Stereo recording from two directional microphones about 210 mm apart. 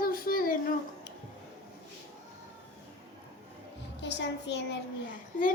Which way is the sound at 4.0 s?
55° left (ahead or behind).